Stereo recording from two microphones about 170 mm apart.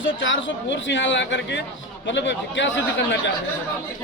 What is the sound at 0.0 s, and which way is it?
Speech, 90° left.